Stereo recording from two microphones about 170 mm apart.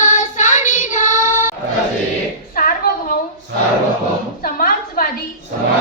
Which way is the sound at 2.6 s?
55° left (ahead or behind).